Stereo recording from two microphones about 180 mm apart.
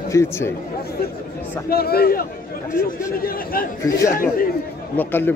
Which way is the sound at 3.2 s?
55° left (ahead or behind).